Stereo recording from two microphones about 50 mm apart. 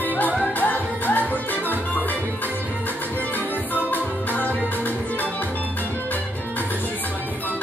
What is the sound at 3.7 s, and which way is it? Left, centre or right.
Music, left.